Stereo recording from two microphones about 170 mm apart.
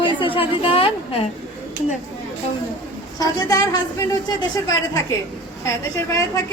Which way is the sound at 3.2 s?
20° left (ahead or behind).